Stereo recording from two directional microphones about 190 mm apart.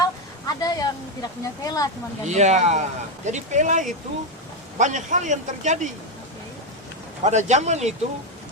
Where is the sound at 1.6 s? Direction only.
20° left (ahead or behind).